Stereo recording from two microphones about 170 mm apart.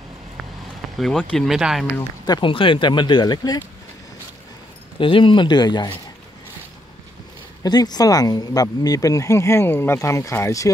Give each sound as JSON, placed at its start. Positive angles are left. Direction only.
{"t": 0.9, "sound": "speech", "side_deg": 5}
{"t": 2.2, "sound": "speech", "side_deg": 25}
{"t": 4.9, "sound": "speech", "side_deg": 30}
{"t": 7.6, "sound": "speech", "side_deg": 25}